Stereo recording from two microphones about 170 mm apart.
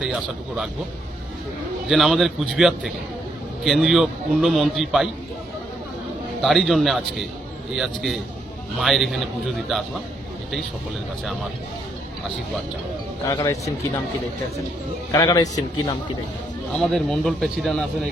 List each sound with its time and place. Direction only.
0.0 s a man's voice: 5° right (ahead or behind)
1.9 s a man's voice: centre (ahead or behind)
6.4 s a man's voice: centre (ahead or behind)
13.2 s a man's voice: 20° left (ahead or behind)
15.1 s a man's voice: 20° left (ahead or behind)
16.7 s a man's voice: centre (ahead or behind)